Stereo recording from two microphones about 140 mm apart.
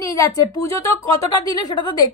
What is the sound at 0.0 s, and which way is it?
A woman's voice, 25° left (ahead or behind).